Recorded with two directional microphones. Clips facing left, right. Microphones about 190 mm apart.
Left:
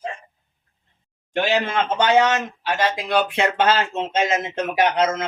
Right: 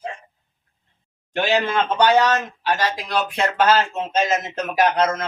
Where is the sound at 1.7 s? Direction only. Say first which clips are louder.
Even; 25° left (ahead or behind).